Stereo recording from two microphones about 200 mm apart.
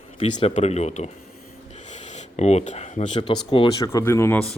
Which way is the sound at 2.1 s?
35° left (ahead or behind).